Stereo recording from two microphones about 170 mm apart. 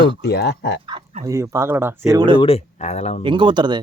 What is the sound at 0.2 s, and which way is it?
Speech, 75° left (ahead or behind).